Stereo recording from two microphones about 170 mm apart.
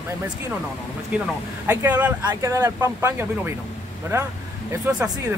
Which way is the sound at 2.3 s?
15° right (ahead or behind).